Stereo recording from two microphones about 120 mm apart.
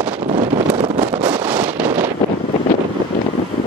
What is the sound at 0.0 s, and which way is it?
Wind noise, 50° right (ahead or behind).